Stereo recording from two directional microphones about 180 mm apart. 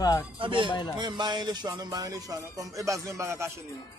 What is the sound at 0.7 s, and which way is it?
Speech, 25° left (ahead or behind).